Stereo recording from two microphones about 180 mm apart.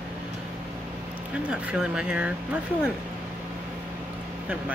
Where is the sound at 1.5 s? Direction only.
5° right (ahead or behind).